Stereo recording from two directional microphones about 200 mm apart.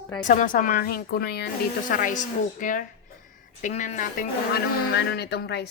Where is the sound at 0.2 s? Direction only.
40° left (ahead or behind).